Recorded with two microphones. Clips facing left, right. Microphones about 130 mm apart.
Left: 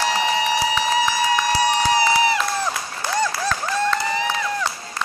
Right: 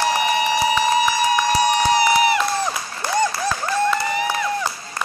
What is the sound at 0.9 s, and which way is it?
Run, 15° right (ahead or behind).